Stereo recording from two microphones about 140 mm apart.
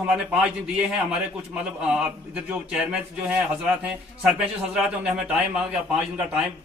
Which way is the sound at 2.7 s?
5° right (ahead or behind).